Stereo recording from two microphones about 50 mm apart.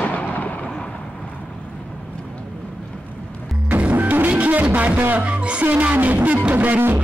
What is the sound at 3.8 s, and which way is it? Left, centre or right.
Music, right.